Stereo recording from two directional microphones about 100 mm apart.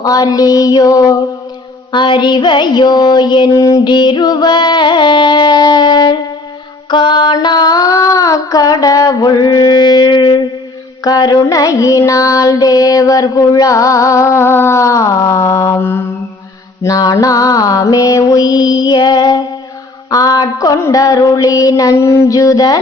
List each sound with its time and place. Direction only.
0.0 s child singing: 40° left (ahead or behind)
1.9 s female singing: 50° left (ahead or behind)
3.5 s music: 35° left (ahead or behind)
6.9 s child singing: 50° left (ahead or behind); by 16.0 s 25° left (ahead or behind)
16.8 s child singing: 40° left (ahead or behind)